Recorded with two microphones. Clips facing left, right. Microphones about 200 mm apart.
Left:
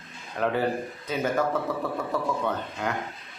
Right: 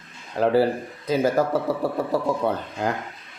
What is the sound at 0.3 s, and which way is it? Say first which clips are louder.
Speech: right 6 dB; 35° right (ahead or behind).